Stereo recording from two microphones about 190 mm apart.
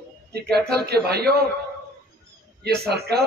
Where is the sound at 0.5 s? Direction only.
55° right (ahead or behind).